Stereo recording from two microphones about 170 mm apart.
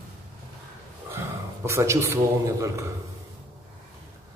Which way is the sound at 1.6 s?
15° right (ahead or behind).